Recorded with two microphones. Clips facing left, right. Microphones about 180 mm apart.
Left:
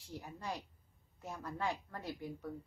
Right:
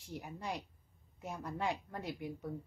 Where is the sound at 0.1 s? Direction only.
15° right (ahead or behind).